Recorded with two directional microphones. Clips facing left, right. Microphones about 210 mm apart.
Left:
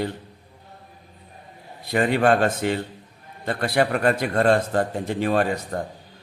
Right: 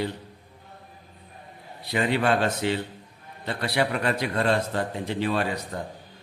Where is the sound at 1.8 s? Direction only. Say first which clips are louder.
Left 4 dB; 50° left (ahead or behind).